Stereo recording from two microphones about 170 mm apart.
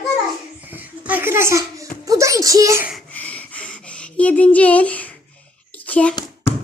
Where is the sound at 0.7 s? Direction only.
10° right (ahead or behind).